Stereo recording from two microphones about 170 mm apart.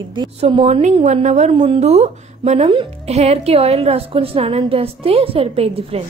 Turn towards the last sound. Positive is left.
turn(degrees=-35)  # may be behind; listen again after turning